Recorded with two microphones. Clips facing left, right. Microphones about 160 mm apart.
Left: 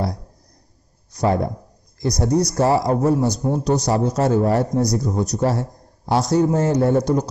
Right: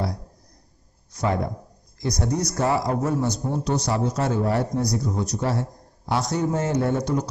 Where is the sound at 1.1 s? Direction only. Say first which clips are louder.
Left 5 dB; 35° left (ahead or behind).